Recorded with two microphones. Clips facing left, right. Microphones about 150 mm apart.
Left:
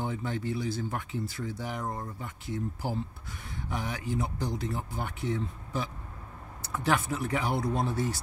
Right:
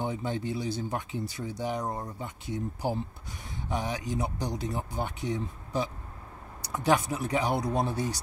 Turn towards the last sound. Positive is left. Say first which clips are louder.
# right 2 dB
turn(degrees=-15)  # may be behind; listen again after turning